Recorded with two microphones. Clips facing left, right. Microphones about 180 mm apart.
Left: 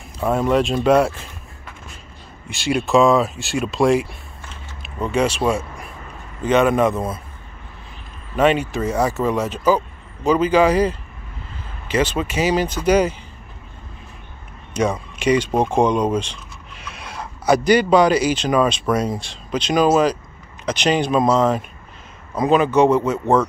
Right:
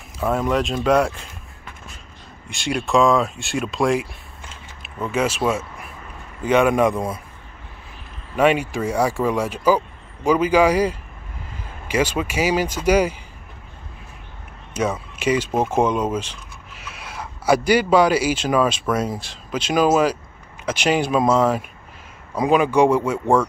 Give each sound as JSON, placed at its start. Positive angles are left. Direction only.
{"t": 0.2, "sound": "speech", "side_deg": 0}
{"t": 2.5, "sound": "speech", "side_deg": 5}
{"t": 5.1, "sound": "speech", "side_deg": -5}
{"t": 8.4, "sound": "speech", "side_deg": -10}
{"t": 14.7, "sound": "speech", "side_deg": -5}